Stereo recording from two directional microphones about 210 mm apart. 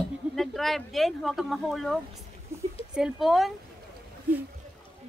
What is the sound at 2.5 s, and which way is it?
Speech, 10° right (ahead or behind).